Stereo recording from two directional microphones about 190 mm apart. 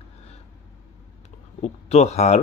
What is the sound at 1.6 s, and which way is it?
Speech, 35° left (ahead or behind).